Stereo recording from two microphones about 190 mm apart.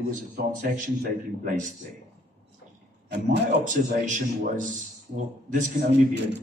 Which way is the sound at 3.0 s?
65° right (ahead or behind).